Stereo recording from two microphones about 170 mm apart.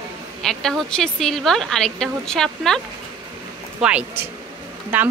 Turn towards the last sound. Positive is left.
turn(degrees=-10)  # may be behind; listen again after turning